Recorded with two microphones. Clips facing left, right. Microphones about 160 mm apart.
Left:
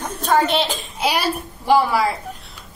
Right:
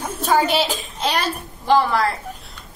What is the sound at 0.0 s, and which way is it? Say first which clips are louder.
Speech: even; 5° right (ahead or behind).